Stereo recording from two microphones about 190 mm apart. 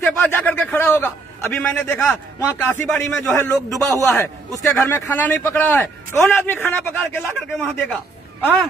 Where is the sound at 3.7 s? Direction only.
15° right (ahead or behind).